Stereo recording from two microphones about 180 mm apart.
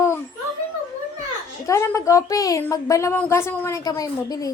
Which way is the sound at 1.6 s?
15° left (ahead or behind).